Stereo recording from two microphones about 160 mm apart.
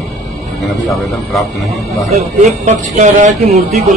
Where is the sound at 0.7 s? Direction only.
Centre (ahead or behind).